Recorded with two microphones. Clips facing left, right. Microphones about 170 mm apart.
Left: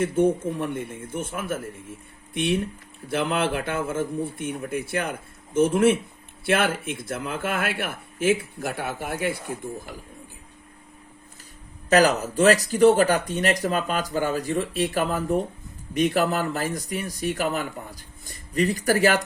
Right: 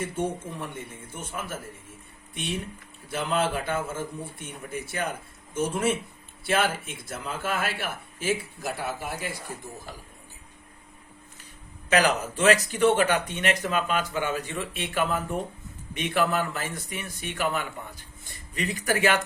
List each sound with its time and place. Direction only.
0.0 s speech: 55° left (ahead or behind)
11.9 s speech: 40° left (ahead or behind)